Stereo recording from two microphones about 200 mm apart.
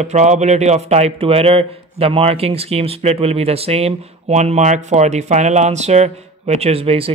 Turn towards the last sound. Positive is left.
turn(degrees=-30)  # may be behind; listen again after turning